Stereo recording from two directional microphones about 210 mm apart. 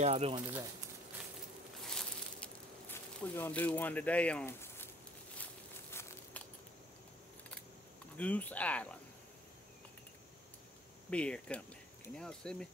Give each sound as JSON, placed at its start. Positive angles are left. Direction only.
{"t": 0.0, "sound": "speech", "side_deg": -30}
{"t": 1.9, "sound": "a sound", "side_deg": 5}
{"t": 5.4, "sound": "walk", "side_deg": 10}
{"t": 8.2, "sound": "speech", "side_deg": 5}
{"t": 11.1, "sound": "speech", "side_deg": 5}